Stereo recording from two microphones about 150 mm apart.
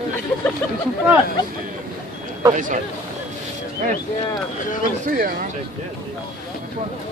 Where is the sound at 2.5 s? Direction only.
60° right (ahead or behind).